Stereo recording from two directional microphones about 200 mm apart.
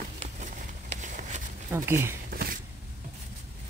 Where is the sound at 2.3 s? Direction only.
50° right (ahead or behind).